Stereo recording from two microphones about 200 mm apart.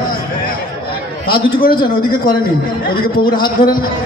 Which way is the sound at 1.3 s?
50° left (ahead or behind).